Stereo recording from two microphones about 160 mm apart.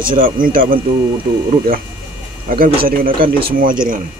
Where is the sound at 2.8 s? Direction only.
65° right (ahead or behind).